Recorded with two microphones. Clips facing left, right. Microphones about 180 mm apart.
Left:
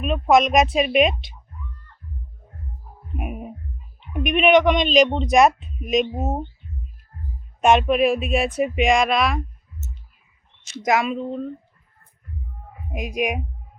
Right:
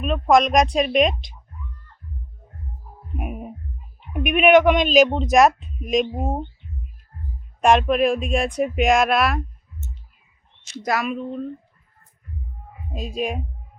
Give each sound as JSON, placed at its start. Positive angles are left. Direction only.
{"t": 0.0, "sound": "music", "side_deg": 5}
{"t": 3.2, "sound": "music", "side_deg": 0}
{"t": 4.1, "sound": "speech", "side_deg": -5}
{"t": 7.6, "sound": "music", "side_deg": 0}
{"t": 10.8, "sound": "a woman's voice", "side_deg": 25}
{"t": 12.9, "sound": "a woman's voice", "side_deg": 15}